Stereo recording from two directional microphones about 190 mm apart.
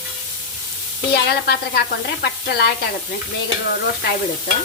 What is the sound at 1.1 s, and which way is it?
Sizzle, 60° left (ahead or behind).